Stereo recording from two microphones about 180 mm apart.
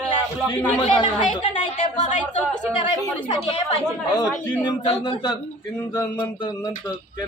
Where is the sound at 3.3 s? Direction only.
35° left (ahead or behind).